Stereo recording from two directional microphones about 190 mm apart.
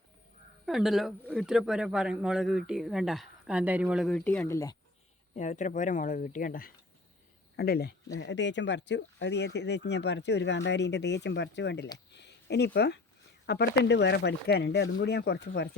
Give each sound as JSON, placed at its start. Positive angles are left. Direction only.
{"t": 0.6, "sound": "a man's voice", "side_deg": 0}
{"t": 5.4, "sound": "speech", "side_deg": 40}